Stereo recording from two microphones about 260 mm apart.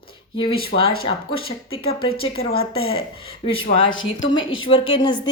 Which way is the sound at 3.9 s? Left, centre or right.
Left.